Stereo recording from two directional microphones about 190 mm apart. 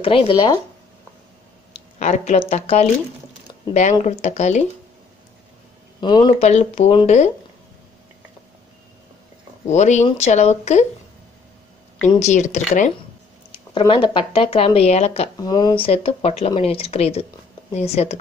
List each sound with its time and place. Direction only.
0.0 s speech: 30° left (ahead or behind)
2.0 s speech: 40° left (ahead or behind)
4.0 s speech: 40° left (ahead or behind)
5.9 s speech: 25° left (ahead or behind)
9.7 s speech: 35° left (ahead or behind)
12.2 s speech: 35° left (ahead or behind)
13.7 s speech: 25° left (ahead or behind)
15.4 s speech: 20° left (ahead or behind)